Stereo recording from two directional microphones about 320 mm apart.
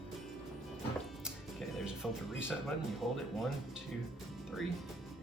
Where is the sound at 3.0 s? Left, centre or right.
Centre.